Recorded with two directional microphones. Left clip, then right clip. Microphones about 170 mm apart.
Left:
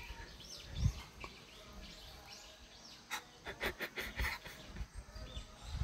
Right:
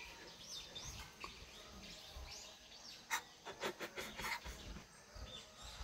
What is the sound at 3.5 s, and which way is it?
Pant, 5° left (ahead or behind).